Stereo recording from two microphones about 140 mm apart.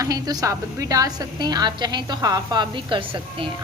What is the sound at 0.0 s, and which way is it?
A woman's voice, 25° right (ahead or behind).